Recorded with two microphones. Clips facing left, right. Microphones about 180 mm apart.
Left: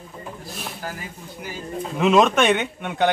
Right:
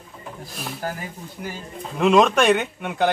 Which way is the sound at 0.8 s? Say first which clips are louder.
Right 4 dB; 45° right (ahead or behind).